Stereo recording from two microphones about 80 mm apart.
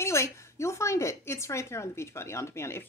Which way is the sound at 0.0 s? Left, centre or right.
Left.